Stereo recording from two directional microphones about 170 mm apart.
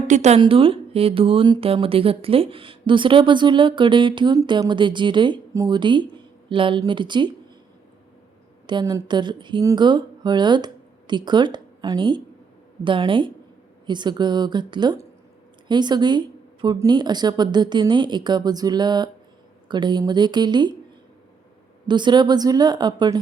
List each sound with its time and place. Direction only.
0.1 s a woman's voice: 40° right (ahead or behind)
0.3 s speech: 30° right (ahead or behind)
8.6 s speech: 25° right (ahead or behind)
21.8 s speech: 25° right (ahead or behind)